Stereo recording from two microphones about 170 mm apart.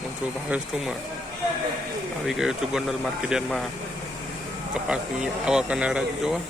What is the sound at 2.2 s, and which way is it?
Speech, centre (ahead or behind).